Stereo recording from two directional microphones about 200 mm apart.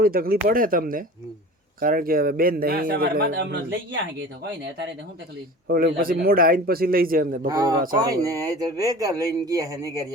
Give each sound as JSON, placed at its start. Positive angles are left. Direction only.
{"t": 0.0, "sound": "a man's voice", "side_deg": -50}
{"t": 5.6, "sound": "a man's voice", "side_deg": -50}
{"t": 7.4, "sound": "speech", "side_deg": -20}